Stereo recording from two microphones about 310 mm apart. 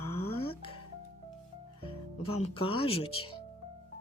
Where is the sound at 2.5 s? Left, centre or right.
Centre.